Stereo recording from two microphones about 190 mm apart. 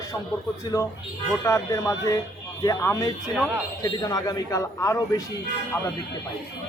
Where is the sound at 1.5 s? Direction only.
15° left (ahead or behind).